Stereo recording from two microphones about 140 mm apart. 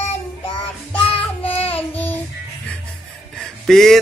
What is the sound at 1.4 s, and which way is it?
Child singing, 45° left (ahead or behind).